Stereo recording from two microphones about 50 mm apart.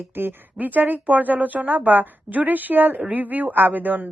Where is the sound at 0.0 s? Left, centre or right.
Right.